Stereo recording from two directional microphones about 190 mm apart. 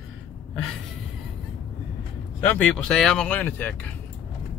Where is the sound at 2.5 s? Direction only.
5° left (ahead or behind).